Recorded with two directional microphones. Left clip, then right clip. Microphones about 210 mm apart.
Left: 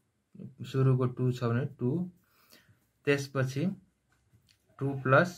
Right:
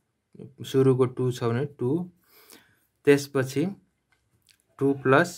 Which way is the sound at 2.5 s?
45° right (ahead or behind).